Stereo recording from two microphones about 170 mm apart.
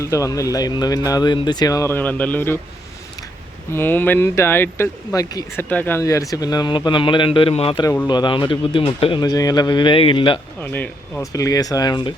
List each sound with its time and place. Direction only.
0.0 s speech: 20° left (ahead or behind)
3.7 s speech: 15° left (ahead or behind)
5.6 s speech: 10° left (ahead or behind); by 10.4 s 30° left (ahead or behind)
10.6 s speech: 10° left (ahead or behind)